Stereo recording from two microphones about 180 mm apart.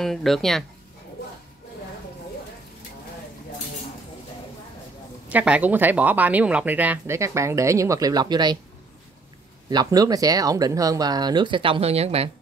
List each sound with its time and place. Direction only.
0.0 s speech: centre (ahead or behind)
5.3 s speech: 10° right (ahead or behind); by 8.5 s 25° right (ahead or behind)
9.7 s speech: 20° right (ahead or behind)